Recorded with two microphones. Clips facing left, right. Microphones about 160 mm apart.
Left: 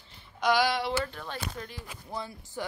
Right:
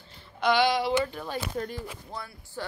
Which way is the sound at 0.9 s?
10° right (ahead or behind).